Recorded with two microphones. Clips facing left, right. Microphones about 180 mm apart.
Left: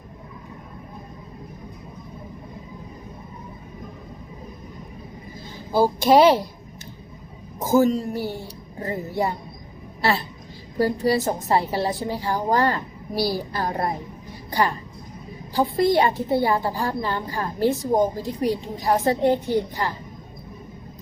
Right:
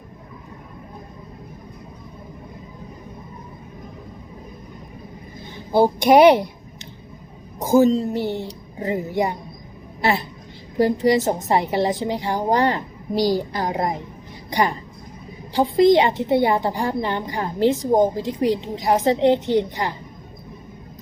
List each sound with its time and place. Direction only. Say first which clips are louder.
5.7 s a woman's voice: right 2 dB; 20° right (ahead or behind)
7.6 s a woman's voice: right 3 dB; 20° right (ahead or behind)